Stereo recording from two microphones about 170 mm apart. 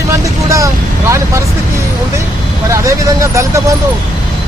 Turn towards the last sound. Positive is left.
turn(degrees=-15)  # may be behind; listen again after turning